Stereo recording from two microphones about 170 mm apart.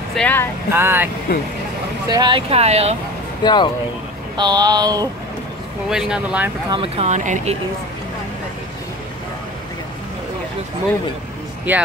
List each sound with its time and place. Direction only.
0.1 s speech: 10° left (ahead or behind)
0.7 s speech: 15° right (ahead or behind)
2.0 s speech: 25° right (ahead or behind)
3.4 s speech: 25° left (ahead or behind)
4.4 s a sound: 25° right (ahead or behind)
5.9 s speech: 5° right (ahead or behind)
6.7 s speech: 35° right (ahead or behind)
11.7 s speech: 10° right (ahead or behind)